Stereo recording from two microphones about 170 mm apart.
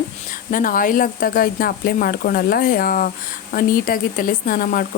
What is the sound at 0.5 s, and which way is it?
Speech, 55° left (ahead or behind).